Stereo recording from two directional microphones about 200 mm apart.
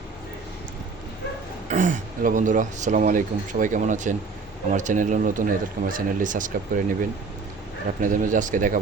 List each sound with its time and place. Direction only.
1.7 s speech: 40° right (ahead or behind)
8.0 s speech: 40° right (ahead or behind)